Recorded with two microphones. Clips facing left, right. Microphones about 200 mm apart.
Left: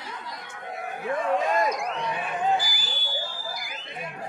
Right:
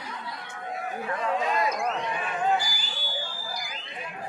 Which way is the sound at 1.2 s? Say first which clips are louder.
Left 3 dB; 50° left (ahead or behind).